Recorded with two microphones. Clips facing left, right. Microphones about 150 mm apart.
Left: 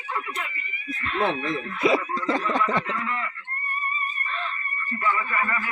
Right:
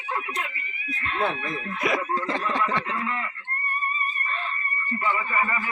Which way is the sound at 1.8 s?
25° left (ahead or behind).